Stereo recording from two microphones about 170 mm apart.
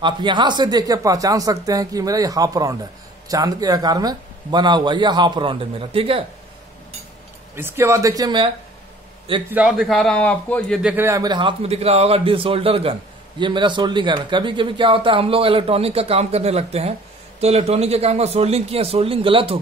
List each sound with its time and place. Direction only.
0.0 s speech: 25° right (ahead or behind)
7.5 s speech: 15° right (ahead or behind)
9.5 s a man's voice: 5° right (ahead or behind)
10.8 s speech: 10° right (ahead or behind); by 19.6 s 30° right (ahead or behind)